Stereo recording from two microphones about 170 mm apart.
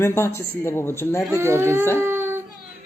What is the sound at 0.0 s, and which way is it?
Speech, 15° left (ahead or behind).